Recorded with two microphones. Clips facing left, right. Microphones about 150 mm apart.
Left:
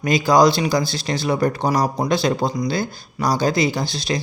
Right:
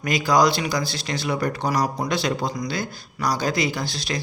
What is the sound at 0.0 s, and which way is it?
Speech, 25° left (ahead or behind).